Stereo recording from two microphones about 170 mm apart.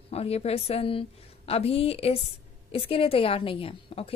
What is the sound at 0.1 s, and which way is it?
A woman's voice, 35° left (ahead or behind).